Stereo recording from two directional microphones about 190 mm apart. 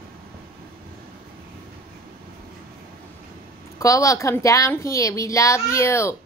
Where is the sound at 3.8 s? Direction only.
15° left (ahead or behind).